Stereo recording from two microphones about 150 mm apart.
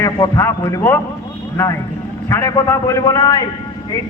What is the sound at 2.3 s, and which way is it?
A man's voice, 20° left (ahead or behind).